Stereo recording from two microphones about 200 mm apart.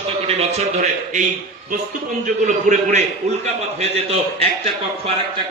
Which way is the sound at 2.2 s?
40° right (ahead or behind).